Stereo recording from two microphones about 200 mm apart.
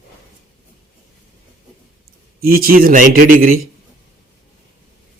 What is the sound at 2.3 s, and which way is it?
A man's voice, 45° right (ahead or behind).